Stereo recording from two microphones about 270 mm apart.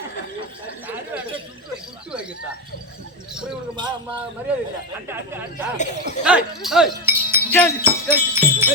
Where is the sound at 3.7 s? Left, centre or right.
Centre.